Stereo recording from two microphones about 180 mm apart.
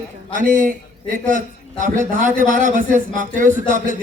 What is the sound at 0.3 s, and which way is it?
Speech, 45° right (ahead or behind).